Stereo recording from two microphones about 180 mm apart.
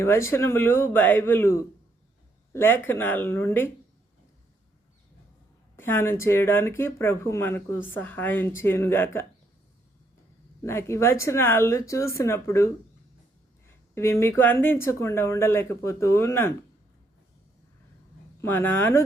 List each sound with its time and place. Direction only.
0.0 s speech: 15° left (ahead or behind)
5.7 s speech: 10° left (ahead or behind)
10.6 s speech: 15° left (ahead or behind)
13.7 s speech: 15° left (ahead or behind)
18.3 s speech: 10° left (ahead or behind)